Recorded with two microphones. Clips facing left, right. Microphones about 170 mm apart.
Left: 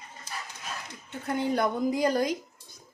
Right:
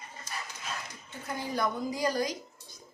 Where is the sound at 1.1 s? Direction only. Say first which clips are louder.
Left 8 dB; 65° left (ahead or behind).